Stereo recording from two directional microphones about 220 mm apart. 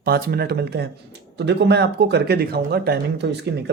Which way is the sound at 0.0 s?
45° right (ahead or behind).